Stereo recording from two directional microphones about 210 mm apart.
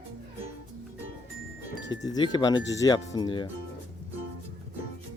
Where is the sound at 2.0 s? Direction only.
20° left (ahead or behind).